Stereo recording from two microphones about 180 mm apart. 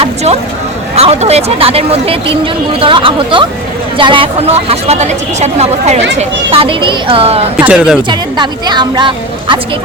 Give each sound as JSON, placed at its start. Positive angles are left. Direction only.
{"t": 0.9, "sound": "a woman's voice", "side_deg": -35}
{"t": 7.6, "sound": "speech", "side_deg": -5}
{"t": 8.1, "sound": "a woman's voice", "side_deg": -25}